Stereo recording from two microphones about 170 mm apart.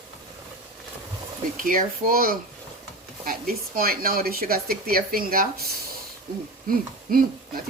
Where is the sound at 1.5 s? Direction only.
55° right (ahead or behind).